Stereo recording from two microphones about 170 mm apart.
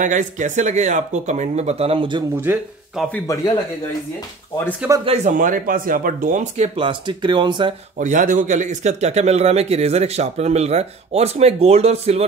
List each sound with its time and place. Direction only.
0.0 s speech: 45° right (ahead or behind); by 2.2 s 30° right (ahead or behind)
2.5 s speech: 10° right (ahead or behind)
5.0 s a man's voice: 40° right (ahead or behind)
8.0 s a man's voice: 50° right (ahead or behind)